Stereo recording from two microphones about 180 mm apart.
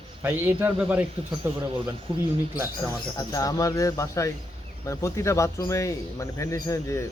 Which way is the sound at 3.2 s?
20° left (ahead or behind).